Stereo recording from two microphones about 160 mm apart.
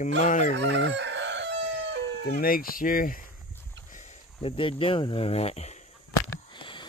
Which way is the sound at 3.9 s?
45° left (ahead or behind).